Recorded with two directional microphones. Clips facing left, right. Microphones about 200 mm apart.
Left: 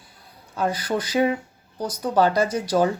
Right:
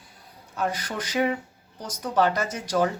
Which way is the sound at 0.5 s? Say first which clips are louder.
Left 5 dB; 30° left (ahead or behind).